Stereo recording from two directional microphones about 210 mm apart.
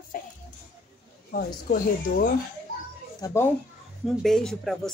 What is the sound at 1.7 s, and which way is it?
Speech, 45° left (ahead or behind).